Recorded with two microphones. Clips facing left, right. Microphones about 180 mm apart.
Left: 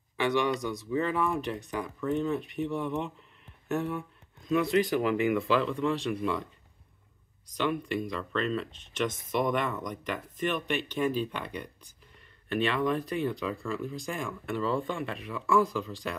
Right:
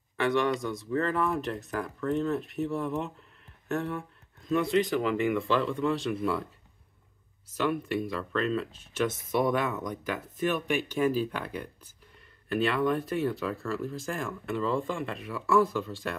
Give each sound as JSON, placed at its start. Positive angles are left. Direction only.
{"t": 0.2, "sound": "speech", "side_deg": 0}